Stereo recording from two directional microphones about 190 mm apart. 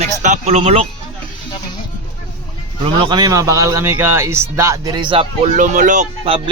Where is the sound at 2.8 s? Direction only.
25° right (ahead or behind).